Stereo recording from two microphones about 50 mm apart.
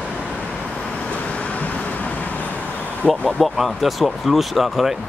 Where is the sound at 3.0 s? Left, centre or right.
Centre.